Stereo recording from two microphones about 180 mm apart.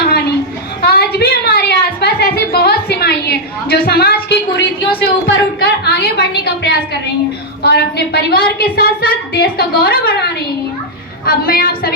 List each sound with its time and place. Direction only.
0.0 s a sound: 60° left (ahead or behind)
5.5 s a woman's voice: 65° left (ahead or behind)
11.3 s a woman's voice: 55° left (ahead or behind)